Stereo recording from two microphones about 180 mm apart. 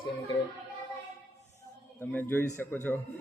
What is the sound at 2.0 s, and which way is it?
A man's voice, 10° left (ahead or behind).